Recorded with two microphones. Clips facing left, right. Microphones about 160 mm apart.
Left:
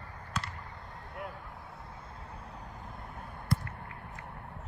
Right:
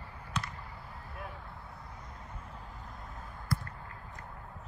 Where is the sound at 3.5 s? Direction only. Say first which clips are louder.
Left 3 dB; 25° left (ahead or behind).